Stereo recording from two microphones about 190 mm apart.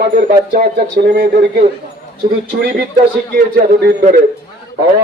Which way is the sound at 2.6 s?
60° right (ahead or behind).